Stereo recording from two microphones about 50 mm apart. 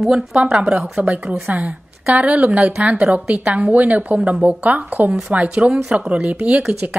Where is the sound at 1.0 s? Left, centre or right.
Right.